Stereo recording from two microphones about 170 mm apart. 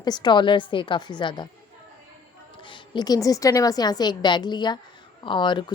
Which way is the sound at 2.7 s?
25° left (ahead or behind).